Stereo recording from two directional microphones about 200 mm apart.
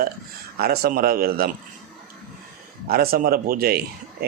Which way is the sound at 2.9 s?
50° right (ahead or behind).